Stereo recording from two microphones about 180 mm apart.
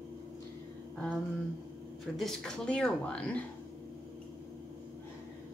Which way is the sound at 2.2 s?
Centre (ahead or behind).